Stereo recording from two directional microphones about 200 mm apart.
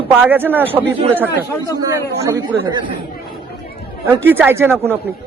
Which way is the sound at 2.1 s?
15° right (ahead or behind).